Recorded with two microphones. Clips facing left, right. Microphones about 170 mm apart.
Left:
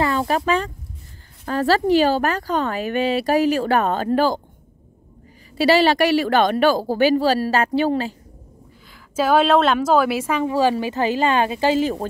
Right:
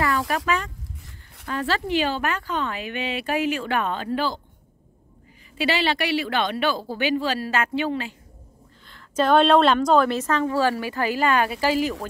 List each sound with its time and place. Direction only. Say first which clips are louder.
0.0 s a sound: left 4 dB; 25° left (ahead or behind)
1.4 s speech: left 7 dB; 40° left (ahead or behind)
5.6 s speech: left 8 dB; 40° left (ahead or behind)
8.8 s a woman's voice: left 1 dB; 5° left (ahead or behind); by 12.1 s 30° left (ahead or behind)